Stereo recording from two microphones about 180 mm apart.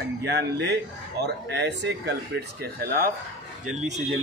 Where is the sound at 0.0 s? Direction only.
70° right (ahead or behind).